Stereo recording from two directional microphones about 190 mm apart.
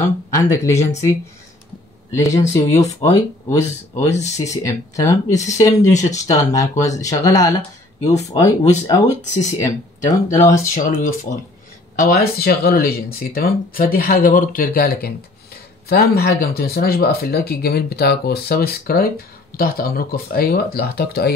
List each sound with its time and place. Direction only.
0.3 s speech: 15° left (ahead or behind)
2.1 s speech: 15° left (ahead or behind)
2.4 s speech: 35° left (ahead or behind)
2.8 s speech: 15° left (ahead or behind)
3.9 s speech: 35° left (ahead or behind)
4.5 s speech: 15° left (ahead or behind)
5.9 s speech: 40° left (ahead or behind)
6.3 s speech: 15° left (ahead or behind)
8.0 s speech: 35° left (ahead or behind)
8.3 s speech: 20° left (ahead or behind)
9.0 s speech: 40° left (ahead or behind)
10.0 s speech: 15° left (ahead or behind)
11.0 s speech: 45° left (ahead or behind)